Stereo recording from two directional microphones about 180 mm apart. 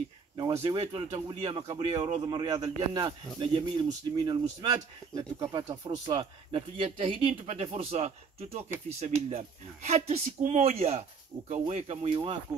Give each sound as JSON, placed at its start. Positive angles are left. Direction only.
{"t": 0.6, "sound": "a man's voice", "side_deg": -25}